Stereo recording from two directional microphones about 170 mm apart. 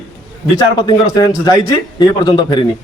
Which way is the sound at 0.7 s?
25° left (ahead or behind).